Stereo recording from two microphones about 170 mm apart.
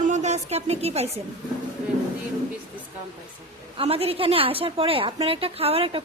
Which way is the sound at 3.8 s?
35° right (ahead or behind).